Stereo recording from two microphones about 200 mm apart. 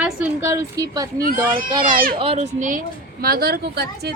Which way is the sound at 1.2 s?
45° right (ahead or behind).